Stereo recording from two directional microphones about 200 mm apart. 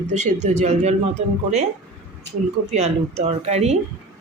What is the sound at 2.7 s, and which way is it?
Speech, 35° right (ahead or behind).